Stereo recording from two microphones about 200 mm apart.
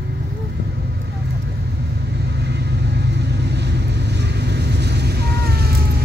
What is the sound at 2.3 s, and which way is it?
Vehicle, 55° right (ahead or behind).